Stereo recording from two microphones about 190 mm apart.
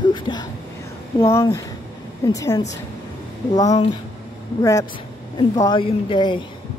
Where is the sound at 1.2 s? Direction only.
15° left (ahead or behind).